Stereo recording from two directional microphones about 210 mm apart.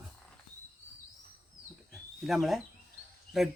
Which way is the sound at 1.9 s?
Centre (ahead or behind).